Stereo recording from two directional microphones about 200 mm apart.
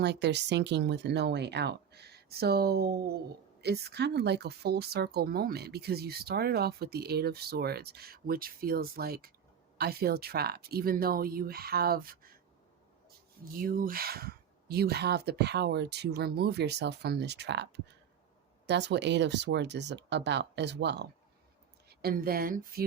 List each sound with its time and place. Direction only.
0.0 s speech: 60° right (ahead or behind)
13.4 s speech: 45° right (ahead or behind)